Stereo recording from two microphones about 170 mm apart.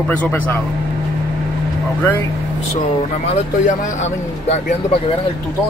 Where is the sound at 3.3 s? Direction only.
45° left (ahead or behind).